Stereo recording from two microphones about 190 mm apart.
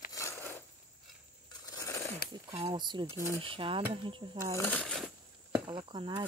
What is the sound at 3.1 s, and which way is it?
Speech, 15° left (ahead or behind).